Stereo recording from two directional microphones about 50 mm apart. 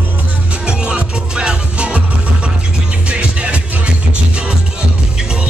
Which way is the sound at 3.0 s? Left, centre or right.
Right.